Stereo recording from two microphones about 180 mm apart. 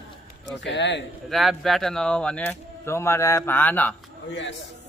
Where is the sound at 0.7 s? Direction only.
80° left.